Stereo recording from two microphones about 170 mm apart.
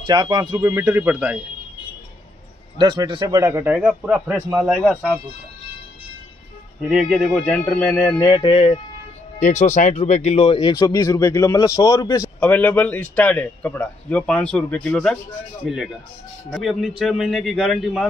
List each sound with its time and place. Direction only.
0.0 s a man's voice: 25° right (ahead or behind)
2.8 s a man's voice: 25° right (ahead or behind); by 5.2 s centre (ahead or behind)
6.9 s a man's voice: 5° right (ahead or behind); by 8.8 s 30° left (ahead or behind)
9.4 s a man's voice: 45° left (ahead or behind); by 15.1 s 5° left (ahead or behind)
16.4 s speech: centre (ahead or behind)